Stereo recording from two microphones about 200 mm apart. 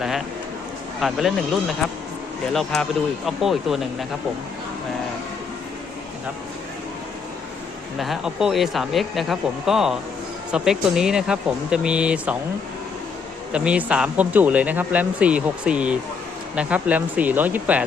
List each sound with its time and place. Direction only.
1.0 s speech: centre (ahead or behind)
7.9 s speech: centre (ahead or behind)
13.5 s speech: 5° right (ahead or behind)